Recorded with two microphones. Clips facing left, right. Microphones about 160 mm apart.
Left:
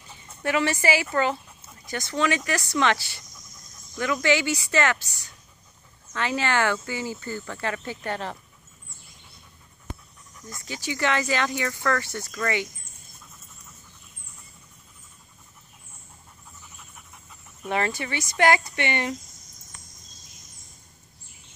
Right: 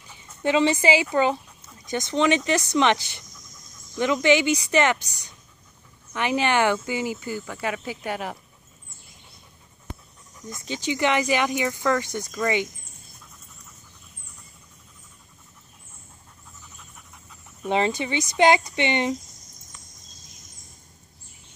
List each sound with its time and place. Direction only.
0.4 s speech: 20° right (ahead or behind)
10.5 s speech: 20° right (ahead or behind)
17.6 s speech: 20° right (ahead or behind)